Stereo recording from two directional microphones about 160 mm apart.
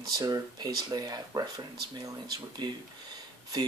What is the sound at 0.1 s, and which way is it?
Speech, 25° right (ahead or behind).